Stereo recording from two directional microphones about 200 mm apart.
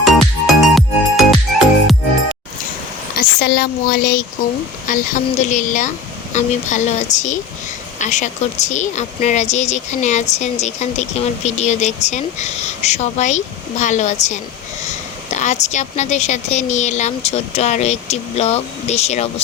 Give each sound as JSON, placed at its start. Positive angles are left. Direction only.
{"t": 0.4, "sound": "music", "side_deg": 0}
{"t": 3.2, "sound": "a woman's voice", "side_deg": 50}